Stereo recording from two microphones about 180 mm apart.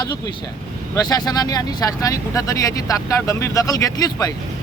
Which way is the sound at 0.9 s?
20° left (ahead or behind).